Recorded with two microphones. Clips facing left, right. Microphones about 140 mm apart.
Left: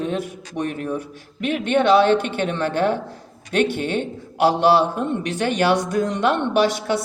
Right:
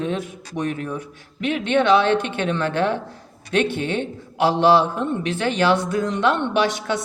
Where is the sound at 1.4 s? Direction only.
45° left (ahead or behind).